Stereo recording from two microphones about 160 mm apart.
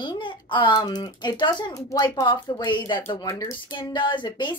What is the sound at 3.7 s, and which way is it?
Speech, 30° left (ahead or behind).